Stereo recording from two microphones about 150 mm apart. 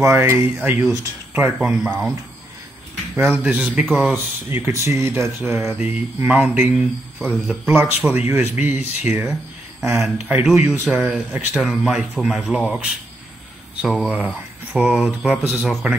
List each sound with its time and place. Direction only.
0.0 s speech: 15° right (ahead or behind)
3.2 s speech: 10° right (ahead or behind)